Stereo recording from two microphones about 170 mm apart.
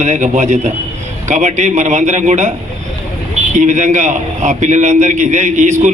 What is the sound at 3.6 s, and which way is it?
A man's voice, 45° right (ahead or behind).